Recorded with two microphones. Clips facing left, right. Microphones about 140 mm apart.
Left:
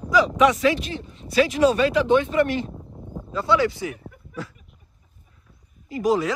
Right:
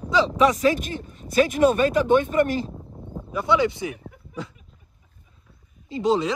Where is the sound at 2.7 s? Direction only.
Centre (ahead or behind).